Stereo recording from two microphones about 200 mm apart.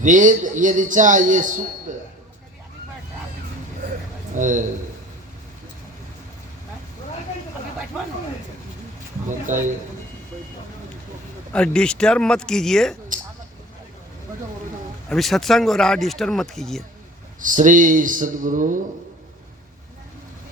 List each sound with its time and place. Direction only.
0.0 s a man's voice: 40° right (ahead or behind)
1.9 s a sound: 40° right (ahead or behind)
4.4 s a man's voice: 40° right (ahead or behind)
9.5 s a man's voice: 40° right (ahead or behind)
11.5 s speech: 5° left (ahead or behind)
15.1 s speech: centre (ahead or behind)
17.4 s a man's voice: 40° right (ahead or behind)